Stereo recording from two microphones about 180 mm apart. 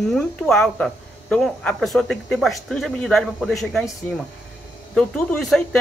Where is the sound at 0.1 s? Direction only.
Centre (ahead or behind).